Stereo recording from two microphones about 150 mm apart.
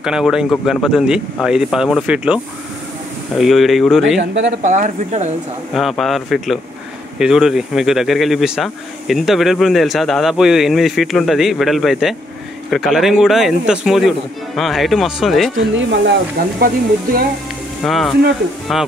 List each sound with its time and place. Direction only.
0.0 s speech: 5° right (ahead or behind)
4.5 s speech: 60° right (ahead or behind)
5.8 s speech: centre (ahead or behind)
16.5 s speech: 80° right
17.8 s speech: centre (ahead or behind)